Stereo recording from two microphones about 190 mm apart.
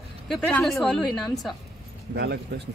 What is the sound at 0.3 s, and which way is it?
A woman's voice, 5° left (ahead or behind).